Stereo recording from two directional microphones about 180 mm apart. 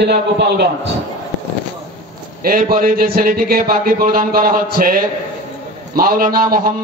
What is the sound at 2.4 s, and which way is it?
A man's voice, 55° right (ahead or behind).